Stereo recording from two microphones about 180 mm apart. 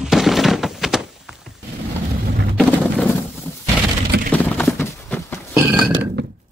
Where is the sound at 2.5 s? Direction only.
Centre (ahead or behind).